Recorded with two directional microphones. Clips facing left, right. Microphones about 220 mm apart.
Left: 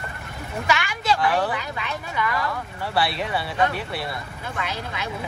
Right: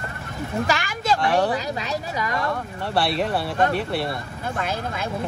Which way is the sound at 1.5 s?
40° right (ahead or behind).